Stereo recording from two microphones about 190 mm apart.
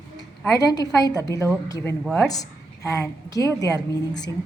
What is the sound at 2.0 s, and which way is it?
Speech, 5° left (ahead or behind).